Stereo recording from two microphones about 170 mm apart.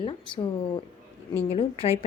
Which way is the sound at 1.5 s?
35° left (ahead or behind).